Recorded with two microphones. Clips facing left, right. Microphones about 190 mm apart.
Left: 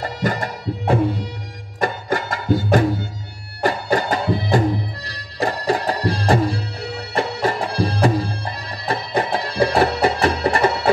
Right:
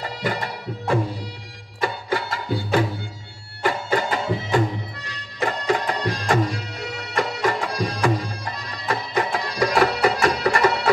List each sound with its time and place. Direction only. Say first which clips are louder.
0.0 s music: left 4 dB; 45° left (ahead or behind); by 10.8 s 25° left (ahead or behind)